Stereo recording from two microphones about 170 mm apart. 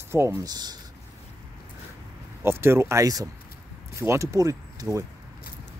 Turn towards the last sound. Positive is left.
turn(degrees=-20)  # may be behind; listen again after turning